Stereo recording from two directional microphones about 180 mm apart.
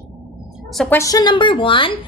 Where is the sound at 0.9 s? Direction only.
20° left (ahead or behind).